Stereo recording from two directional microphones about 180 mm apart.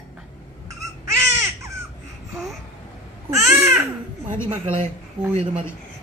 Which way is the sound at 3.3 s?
15° right (ahead or behind).